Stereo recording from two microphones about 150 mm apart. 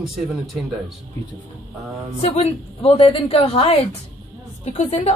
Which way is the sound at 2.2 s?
45° left (ahead or behind).